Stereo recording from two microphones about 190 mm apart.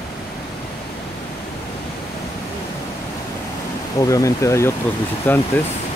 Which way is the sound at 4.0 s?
15° left (ahead or behind).